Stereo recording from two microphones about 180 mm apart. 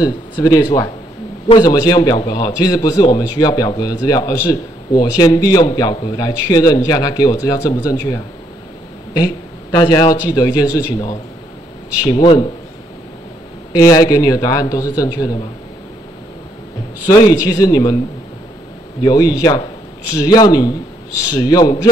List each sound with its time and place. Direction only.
0.0 s a man's voice: 20° left (ahead or behind)
12.0 s speech: 25° left (ahead or behind)
13.7 s speech: 20° left (ahead or behind)
17.0 s speech: 20° left (ahead or behind)
19.0 s speech: 20° left (ahead or behind)